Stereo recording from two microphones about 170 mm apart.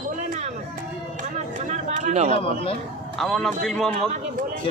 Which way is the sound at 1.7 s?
45° right (ahead or behind).